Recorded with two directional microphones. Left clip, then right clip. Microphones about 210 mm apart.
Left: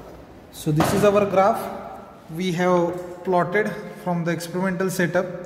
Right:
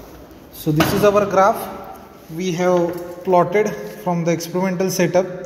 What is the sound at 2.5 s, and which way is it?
Speech, 10° left (ahead or behind).